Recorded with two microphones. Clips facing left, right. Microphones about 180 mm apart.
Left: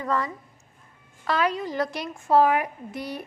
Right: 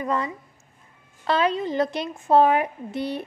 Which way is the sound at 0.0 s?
20° right (ahead or behind).